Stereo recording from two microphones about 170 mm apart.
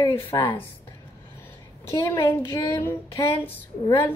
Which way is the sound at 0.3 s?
25° left (ahead or behind).